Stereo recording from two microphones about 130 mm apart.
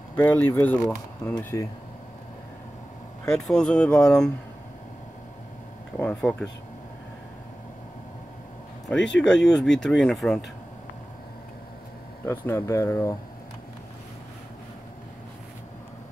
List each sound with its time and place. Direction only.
0.1 s speech: 15° left (ahead or behind)
3.3 s speech: 5° left (ahead or behind)
6.2 s speech: 5° left (ahead or behind)
8.8 s speech: 5° left (ahead or behind)
12.3 s speech: 20° left (ahead or behind)